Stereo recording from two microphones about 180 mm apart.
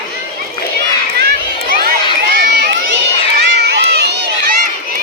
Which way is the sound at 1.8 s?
60° right (ahead or behind).